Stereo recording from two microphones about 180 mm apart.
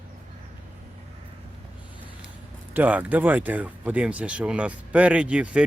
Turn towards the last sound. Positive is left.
turn(degrees=-5)  # may be behind; listen again after turning